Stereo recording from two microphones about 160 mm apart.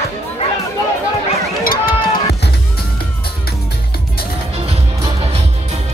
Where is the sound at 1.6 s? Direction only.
75° left (ahead or behind).